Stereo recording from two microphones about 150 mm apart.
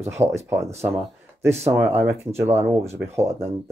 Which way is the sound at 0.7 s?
45° right (ahead or behind).